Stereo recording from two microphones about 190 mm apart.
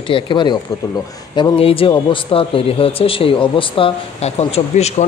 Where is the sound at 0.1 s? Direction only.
25° left (ahead or behind).